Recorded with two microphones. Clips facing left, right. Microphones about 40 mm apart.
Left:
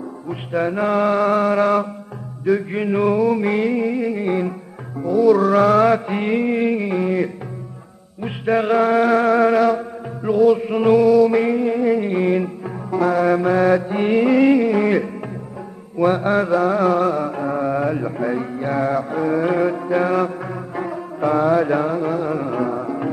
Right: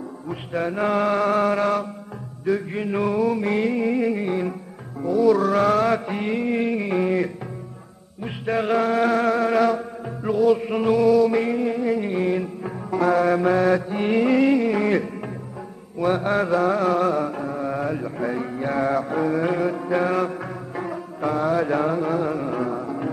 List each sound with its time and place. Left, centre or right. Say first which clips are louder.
0.3 s mantra: left 4 dB; centre
2.9 s music: left 5 dB; centre
4.3 s music: left 4 dB; centre
5.0 s mantra: left 4 dB; centre
6.1 s mantra: left 5 dB; left
6.5 s music: left 3 dB; centre
8.5 s music: left 5 dB; centre
12.6 s music: right 2 dB; centre
16.0 s mantra: left 4 dB; centre
17.6 s mantra: left 5 dB; centre
22.3 s music: left 3 dB; centre